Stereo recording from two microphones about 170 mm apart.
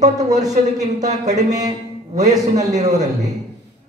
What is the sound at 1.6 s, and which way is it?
A man's voice, 45° right (ahead or behind).